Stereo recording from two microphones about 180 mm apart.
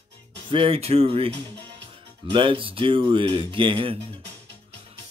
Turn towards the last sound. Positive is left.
turn(degrees=-30)  # may be behind; listen again after turning